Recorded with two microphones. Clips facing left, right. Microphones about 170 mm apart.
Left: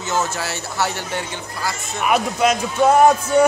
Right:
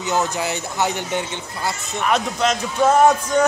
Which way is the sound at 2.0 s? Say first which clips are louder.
Left 2 dB; 10° left (ahead or behind).